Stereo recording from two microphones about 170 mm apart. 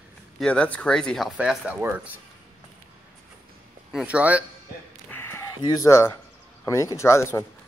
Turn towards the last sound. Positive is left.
turn(degrees=15)  # may be behind; listen again after turning